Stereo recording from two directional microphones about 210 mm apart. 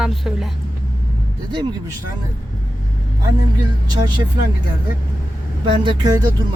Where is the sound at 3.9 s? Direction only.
20° right (ahead or behind).